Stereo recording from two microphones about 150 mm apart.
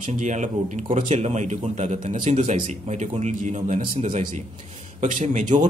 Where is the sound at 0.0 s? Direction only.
55° right (ahead or behind).